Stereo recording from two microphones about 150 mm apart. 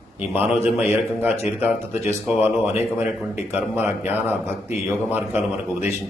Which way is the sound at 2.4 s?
10° right (ahead or behind).